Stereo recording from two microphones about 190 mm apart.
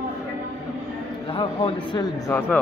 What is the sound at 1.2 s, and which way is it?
Speech, 25° left (ahead or behind).